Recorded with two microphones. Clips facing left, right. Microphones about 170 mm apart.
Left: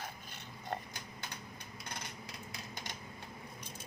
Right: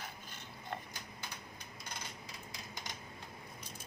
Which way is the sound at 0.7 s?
40° left (ahead or behind).